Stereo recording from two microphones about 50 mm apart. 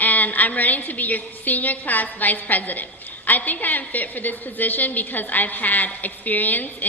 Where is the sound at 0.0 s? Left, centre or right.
Left.